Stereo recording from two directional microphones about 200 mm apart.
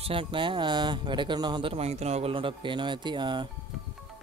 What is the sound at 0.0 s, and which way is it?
Speech, 25° right (ahead or behind).